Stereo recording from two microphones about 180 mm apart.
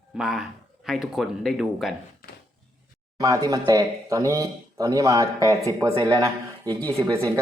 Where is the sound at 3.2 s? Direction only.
20° right (ahead or behind).